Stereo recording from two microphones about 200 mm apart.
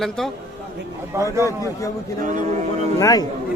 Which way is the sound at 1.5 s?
15° left (ahead or behind).